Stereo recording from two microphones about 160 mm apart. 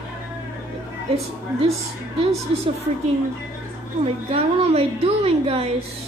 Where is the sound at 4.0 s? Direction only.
40° right (ahead or behind).